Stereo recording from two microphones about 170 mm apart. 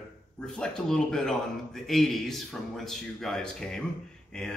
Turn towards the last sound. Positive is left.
turn(degrees=5)  # may be behind; listen again after turning